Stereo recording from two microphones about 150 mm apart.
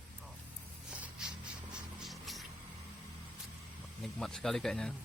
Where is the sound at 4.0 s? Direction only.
Centre (ahead or behind).